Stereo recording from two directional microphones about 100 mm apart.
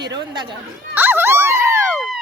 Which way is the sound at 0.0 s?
45° right (ahead or behind).